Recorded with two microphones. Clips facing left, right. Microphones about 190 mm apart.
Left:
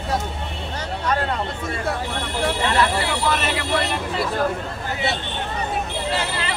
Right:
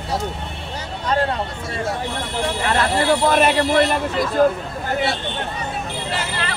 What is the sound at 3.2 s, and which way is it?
Speech, 45° right (ahead or behind).